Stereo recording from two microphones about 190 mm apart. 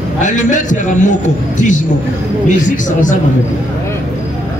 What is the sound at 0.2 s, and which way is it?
Speech, 40° left (ahead or behind).